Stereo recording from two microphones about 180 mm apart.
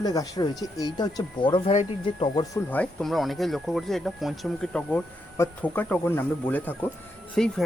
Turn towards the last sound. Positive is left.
turn(degrees=5)  # may be behind; listen again after turning